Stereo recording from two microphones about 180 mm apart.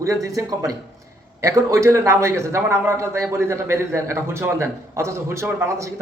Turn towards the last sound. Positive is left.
turn(degrees=-15)  # may be behind; listen again after turning